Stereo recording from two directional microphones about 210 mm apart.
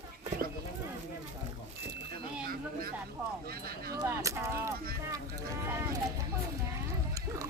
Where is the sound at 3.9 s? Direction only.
15° right (ahead or behind).